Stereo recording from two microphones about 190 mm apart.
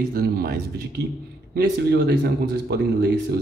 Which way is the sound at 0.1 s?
50° right (ahead or behind).